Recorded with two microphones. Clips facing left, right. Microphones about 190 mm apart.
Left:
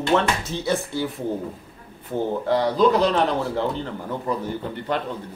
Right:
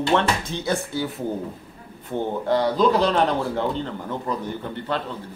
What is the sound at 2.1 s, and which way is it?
Speech, centre (ahead or behind).